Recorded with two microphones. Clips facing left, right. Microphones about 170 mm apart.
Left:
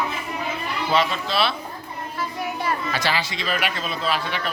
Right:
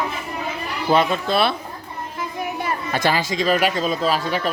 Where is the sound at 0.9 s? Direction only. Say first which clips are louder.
Right 5 dB; 50° right (ahead or behind).